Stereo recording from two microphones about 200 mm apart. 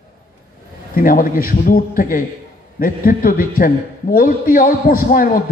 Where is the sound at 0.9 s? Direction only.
45° left (ahead or behind).